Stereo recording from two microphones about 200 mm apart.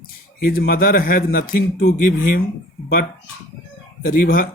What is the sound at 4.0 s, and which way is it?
Speech, 45° left (ahead or behind).